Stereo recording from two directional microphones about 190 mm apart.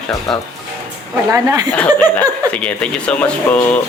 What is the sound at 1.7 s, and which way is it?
A man's voice, 10° left (ahead or behind).